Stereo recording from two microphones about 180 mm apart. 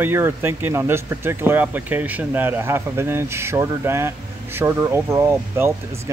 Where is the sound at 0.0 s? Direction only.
10° right (ahead or behind).